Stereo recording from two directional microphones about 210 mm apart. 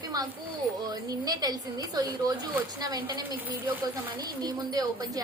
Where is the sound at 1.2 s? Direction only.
20° right (ahead or behind).